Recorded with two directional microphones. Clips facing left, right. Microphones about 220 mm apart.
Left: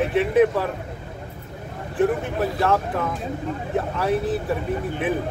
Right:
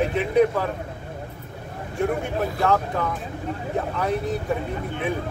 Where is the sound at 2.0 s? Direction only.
Centre (ahead or behind).